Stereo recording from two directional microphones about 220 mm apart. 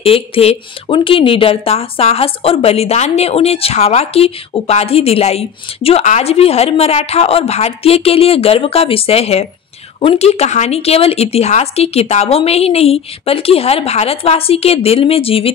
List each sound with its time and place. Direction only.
0.0 s speech: 25° left (ahead or behind)